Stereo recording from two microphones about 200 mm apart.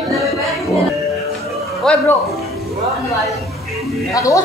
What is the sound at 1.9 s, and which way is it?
Speech, 5° left (ahead or behind).